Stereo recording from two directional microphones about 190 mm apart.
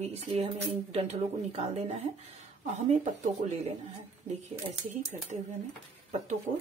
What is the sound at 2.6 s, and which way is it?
Speech, 35° right (ahead or behind).